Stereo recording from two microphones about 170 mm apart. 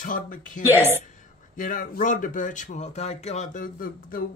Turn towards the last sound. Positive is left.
turn(degrees=55)  # may be behind; listen again after turning